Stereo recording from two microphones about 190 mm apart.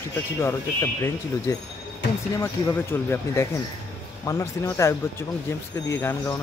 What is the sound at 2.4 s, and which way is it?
Speech, 15° left (ahead or behind).